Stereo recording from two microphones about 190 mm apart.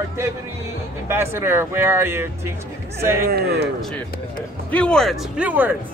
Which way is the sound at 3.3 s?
55° right (ahead or behind).